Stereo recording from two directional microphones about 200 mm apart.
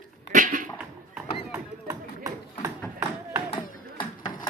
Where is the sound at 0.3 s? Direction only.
40° right (ahead or behind).